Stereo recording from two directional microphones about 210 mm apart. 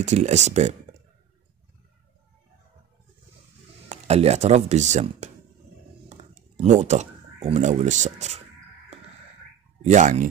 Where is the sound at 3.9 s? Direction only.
30° right (ahead or behind).